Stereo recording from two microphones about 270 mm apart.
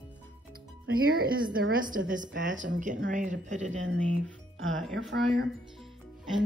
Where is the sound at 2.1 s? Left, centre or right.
Right.